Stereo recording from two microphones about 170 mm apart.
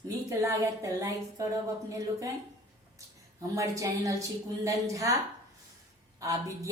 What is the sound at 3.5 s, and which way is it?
Female singing, 20° right (ahead or behind).